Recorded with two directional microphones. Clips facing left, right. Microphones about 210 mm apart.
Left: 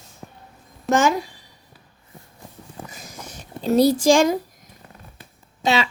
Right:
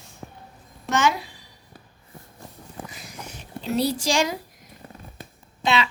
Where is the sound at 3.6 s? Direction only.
45° left (ahead or behind).